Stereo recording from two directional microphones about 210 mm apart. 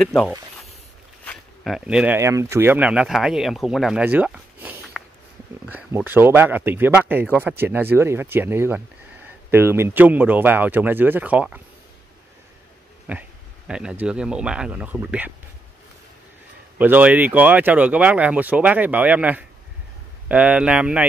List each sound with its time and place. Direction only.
0.0 s speech: centre (ahead or behind)
13.1 s speech: 10° right (ahead or behind)
16.7 s speech: 10° right (ahead or behind)